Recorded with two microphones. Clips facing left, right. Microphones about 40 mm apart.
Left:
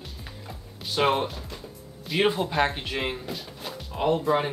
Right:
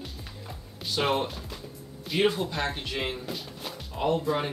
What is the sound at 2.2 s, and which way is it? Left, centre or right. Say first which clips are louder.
Speech: left 3 dB; centre.